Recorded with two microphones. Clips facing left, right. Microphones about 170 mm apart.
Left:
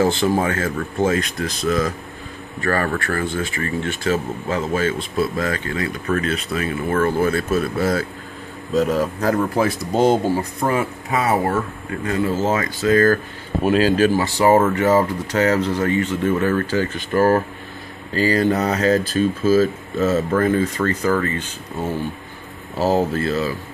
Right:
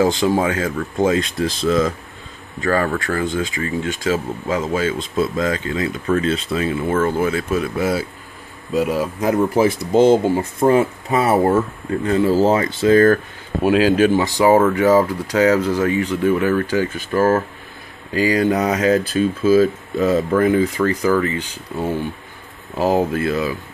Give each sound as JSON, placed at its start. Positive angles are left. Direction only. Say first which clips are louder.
{"t": 0.0, "sound": "speech", "louder": "right 1 dB", "side_deg": -15}
{"t": 1.2, "sound": "speech", "louder": "right 3 dB", "side_deg": -30}
{"t": 2.6, "sound": "speech", "louder": "right 2 dB", "side_deg": -15}
{"t": 7.2, "sound": "speech", "louder": "even", "side_deg": -15}
{"t": 13.7, "sound": "speech", "louder": "right 2 dB", "side_deg": -10}
{"t": 17.1, "sound": "speech", "louder": "even", "side_deg": 10}
{"t": 18.1, "sound": "speech", "louder": "right 1 dB", "side_deg": -10}